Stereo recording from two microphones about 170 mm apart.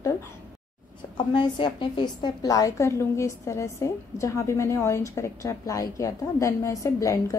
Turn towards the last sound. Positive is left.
turn(degrees=20)  # may be behind; listen again after turning